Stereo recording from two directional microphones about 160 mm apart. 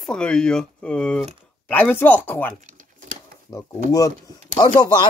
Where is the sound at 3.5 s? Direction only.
20° left (ahead or behind).